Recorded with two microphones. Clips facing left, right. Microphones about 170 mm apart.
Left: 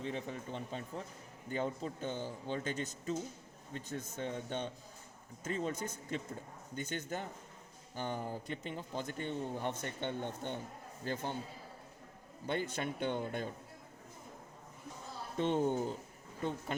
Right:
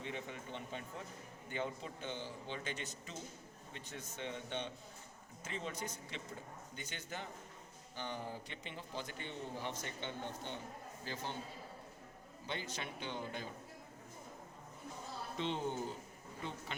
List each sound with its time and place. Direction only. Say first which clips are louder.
0.0 s a man's voice: left 5 dB; 35° left (ahead or behind)
12.5 s a man's voice: left 8 dB; 55° left (ahead or behind)
15.4 s a man's voice: left 7 dB; 50° left (ahead or behind)